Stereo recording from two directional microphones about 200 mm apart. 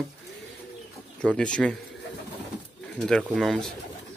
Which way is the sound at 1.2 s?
5° left (ahead or behind).